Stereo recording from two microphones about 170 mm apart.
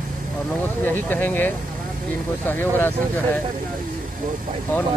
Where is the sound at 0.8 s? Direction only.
10° left (ahead or behind).